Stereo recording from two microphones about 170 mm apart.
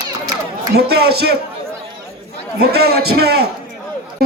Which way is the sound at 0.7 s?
70° right (ahead or behind).